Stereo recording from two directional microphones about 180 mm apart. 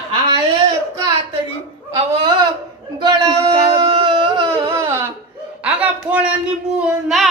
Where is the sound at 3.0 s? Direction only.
20° right (ahead or behind).